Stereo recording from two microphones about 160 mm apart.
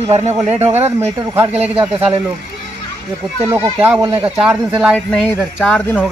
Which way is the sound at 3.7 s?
15° right (ahead or behind).